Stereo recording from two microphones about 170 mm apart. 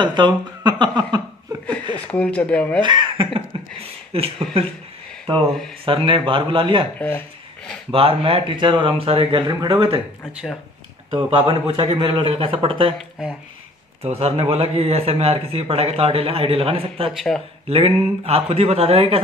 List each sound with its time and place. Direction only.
0.0 s speech: 25° right (ahead or behind)
2.0 s speech: 10° left (ahead or behind)
2.8 s speech: 25° right (ahead or behind)
3.5 s a sound: 30° right (ahead or behind)
4.1 s speech: 35° right (ahead or behind)
5.9 s speech: 30° right (ahead or behind)
7.0 s speech: 10° left (ahead or behind)
7.9 s speech: 35° right (ahead or behind)
9.5 s speech: 25° right (ahead or behind)
10.2 s speech: 5° left (ahead or behind)
11.1 s speech: 35° right (ahead or behind)
14.0 s speech: 35° right (ahead or behind)
17.1 s speech: centre (ahead or behind)
17.6 s speech: 35° right (ahead or behind)